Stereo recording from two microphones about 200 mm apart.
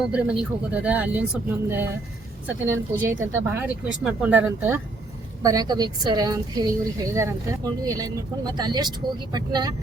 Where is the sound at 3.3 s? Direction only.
10° right (ahead or behind).